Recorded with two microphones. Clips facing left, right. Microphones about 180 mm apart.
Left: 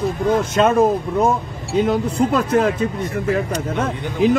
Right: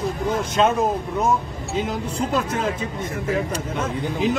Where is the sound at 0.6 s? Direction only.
55° left (ahead or behind).